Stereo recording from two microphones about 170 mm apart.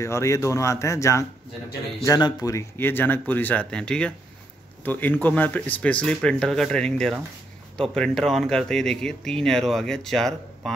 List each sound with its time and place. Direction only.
0.0 s speech: 15° left (ahead or behind)